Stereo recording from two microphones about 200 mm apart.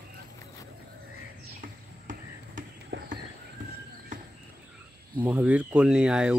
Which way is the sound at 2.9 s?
65° right (ahead or behind).